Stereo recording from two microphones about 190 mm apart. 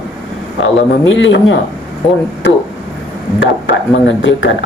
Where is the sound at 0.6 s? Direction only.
90° left.